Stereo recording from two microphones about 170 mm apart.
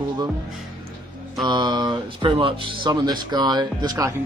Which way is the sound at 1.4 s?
25° right (ahead or behind).